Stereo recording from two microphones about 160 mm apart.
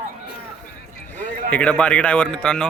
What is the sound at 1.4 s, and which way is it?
A man's voice, 5° left (ahead or behind).